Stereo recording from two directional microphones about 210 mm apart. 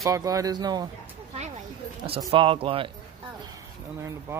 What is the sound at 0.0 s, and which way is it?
Speech, 15° right (ahead or behind).